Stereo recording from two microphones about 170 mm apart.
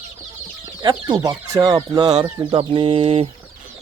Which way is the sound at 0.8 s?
25° right (ahead or behind).